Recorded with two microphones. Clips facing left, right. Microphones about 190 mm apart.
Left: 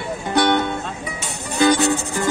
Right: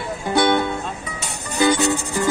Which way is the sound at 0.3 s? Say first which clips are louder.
Even; 5° right (ahead or behind).